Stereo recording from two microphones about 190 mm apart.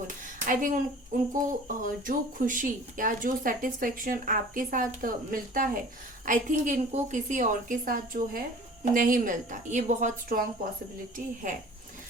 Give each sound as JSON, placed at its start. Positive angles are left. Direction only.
{"t": 0.4, "sound": "speech", "side_deg": -45}
{"t": 11.4, "sound": "speech", "side_deg": -45}